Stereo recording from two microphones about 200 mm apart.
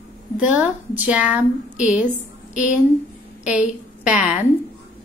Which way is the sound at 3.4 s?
5° right (ahead or behind).